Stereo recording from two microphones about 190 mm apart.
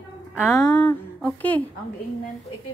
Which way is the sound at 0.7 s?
5° left (ahead or behind).